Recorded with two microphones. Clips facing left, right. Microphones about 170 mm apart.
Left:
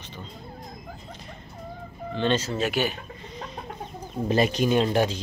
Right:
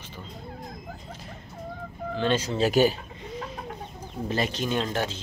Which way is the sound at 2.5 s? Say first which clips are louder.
Right 5 dB; 35° right (ahead or behind).